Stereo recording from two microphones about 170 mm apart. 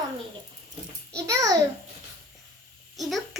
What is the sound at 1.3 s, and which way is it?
Speech, 20° right (ahead or behind).